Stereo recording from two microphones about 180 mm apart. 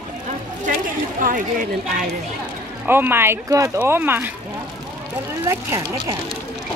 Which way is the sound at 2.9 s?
10° right (ahead or behind).